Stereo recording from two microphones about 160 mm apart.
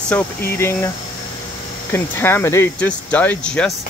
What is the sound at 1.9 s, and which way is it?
Speech, 15° left (ahead or behind).